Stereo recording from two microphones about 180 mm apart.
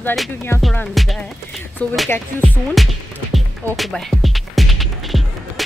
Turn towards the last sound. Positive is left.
turn(degrees=0)  # may be behind; listen again after turning